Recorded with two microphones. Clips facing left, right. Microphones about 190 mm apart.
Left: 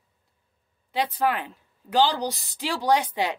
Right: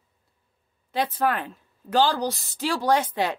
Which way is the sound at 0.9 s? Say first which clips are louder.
Even; 10° left (ahead or behind).